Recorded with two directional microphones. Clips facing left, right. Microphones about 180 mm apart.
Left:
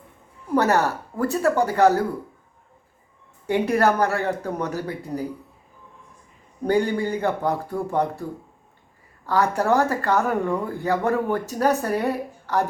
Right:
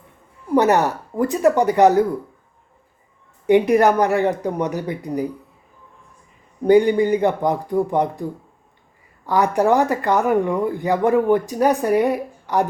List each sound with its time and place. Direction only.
0.5 s speech: 15° right (ahead or behind)
3.4 s speech: 15° right (ahead or behind)
6.7 s speech: 15° right (ahead or behind)